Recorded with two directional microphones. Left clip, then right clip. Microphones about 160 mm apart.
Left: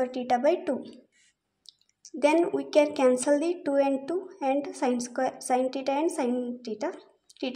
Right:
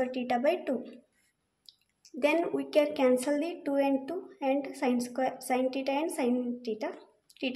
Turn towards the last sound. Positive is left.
turn(degrees=15)  # may be behind; listen again after turning